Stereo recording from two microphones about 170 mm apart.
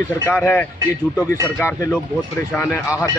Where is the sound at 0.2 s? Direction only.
10° left (ahead or behind).